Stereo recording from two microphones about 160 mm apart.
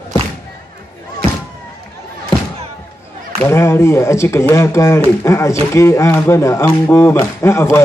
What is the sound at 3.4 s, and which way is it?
Speech, 15° left (ahead or behind).